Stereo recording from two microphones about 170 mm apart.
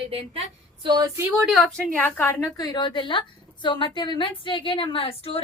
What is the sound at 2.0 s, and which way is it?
A woman's voice, 10° left (ahead or behind).